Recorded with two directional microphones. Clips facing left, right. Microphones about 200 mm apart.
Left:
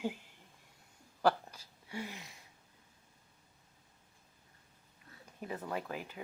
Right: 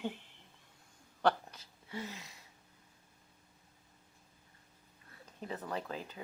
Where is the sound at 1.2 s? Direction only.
10° left (ahead or behind).